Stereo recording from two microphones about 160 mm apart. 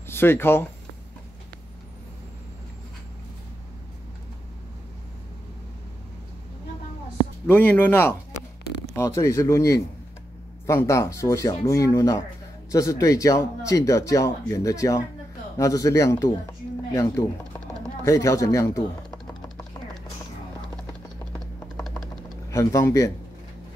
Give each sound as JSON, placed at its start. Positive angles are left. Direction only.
{"t": 0.0, "sound": "speech", "side_deg": 15}
{"t": 7.4, "sound": "speech", "side_deg": 10}
{"t": 22.5, "sound": "speech", "side_deg": 20}